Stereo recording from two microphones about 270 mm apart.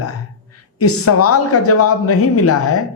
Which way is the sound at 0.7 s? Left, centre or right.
Left.